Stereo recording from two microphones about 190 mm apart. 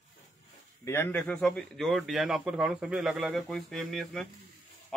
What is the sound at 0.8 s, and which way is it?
Speech, 10° left (ahead or behind).